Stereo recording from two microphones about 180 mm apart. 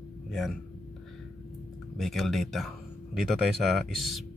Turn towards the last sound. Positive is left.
turn(degrees=0)  # may be behind; listen again after turning